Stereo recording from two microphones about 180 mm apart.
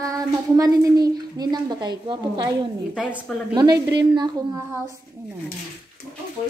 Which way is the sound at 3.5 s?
25° right (ahead or behind).